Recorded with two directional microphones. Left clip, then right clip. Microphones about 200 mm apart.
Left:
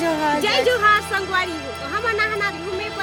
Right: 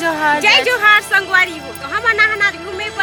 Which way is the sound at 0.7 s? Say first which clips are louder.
Right 5 dB; 15° left (ahead or behind).